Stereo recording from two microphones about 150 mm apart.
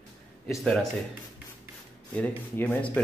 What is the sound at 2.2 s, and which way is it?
Speech, 10° left (ahead or behind).